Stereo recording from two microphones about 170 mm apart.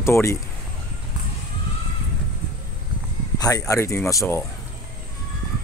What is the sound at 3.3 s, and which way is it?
Speech, 20° left (ahead or behind).